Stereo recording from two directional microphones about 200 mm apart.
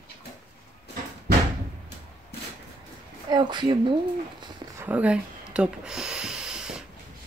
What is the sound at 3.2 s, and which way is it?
Speech, 20° right (ahead or behind).